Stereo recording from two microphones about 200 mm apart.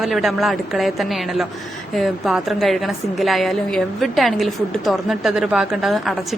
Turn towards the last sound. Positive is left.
turn(degrees=0)  # may be behind; listen again after turning